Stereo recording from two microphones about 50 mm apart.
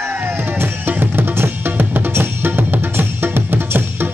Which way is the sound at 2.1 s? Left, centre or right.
Right.